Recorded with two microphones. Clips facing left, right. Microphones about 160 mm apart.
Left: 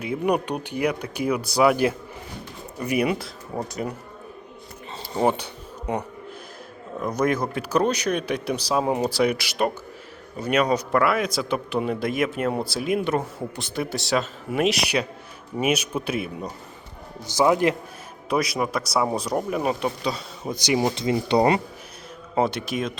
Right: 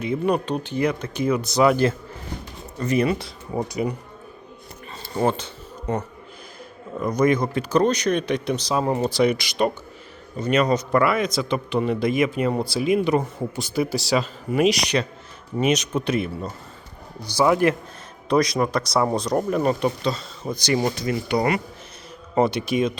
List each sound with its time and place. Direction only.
0.0 s speech: 10° left (ahead or behind)
3.2 s speech: centre (ahead or behind)
5.1 s speech: 15° left (ahead or behind)
17.3 s a man's voice: 20° left (ahead or behind)
18.3 s speech: 5° left (ahead or behind); by 21.6 s 30° left (ahead or behind)
22.4 s speech: centre (ahead or behind)